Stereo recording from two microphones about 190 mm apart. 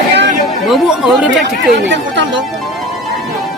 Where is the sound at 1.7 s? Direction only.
70° right (ahead or behind).